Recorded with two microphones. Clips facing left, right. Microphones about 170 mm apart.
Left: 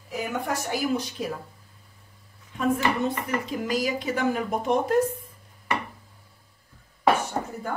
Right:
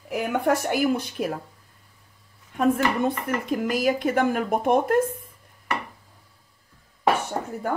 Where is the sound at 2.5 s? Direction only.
55° right (ahead or behind).